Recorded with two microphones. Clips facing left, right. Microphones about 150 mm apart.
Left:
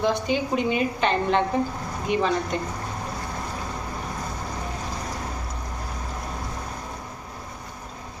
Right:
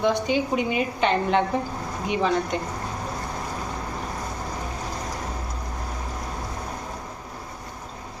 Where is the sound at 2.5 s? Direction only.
15° right (ahead or behind).